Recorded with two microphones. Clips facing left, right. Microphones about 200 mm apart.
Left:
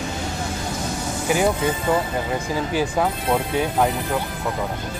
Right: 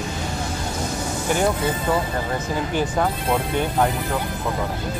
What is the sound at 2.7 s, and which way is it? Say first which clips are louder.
Speech: left 1 dB; 5° left (ahead or behind).